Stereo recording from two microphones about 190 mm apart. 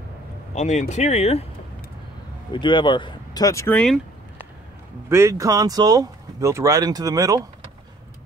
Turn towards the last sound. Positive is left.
turn(degrees=-20)  # may be behind; listen again after turning